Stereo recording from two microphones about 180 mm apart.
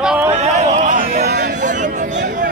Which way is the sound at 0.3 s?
35° right (ahead or behind).